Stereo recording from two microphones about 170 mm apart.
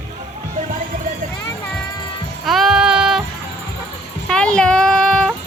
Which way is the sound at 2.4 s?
Centre (ahead or behind).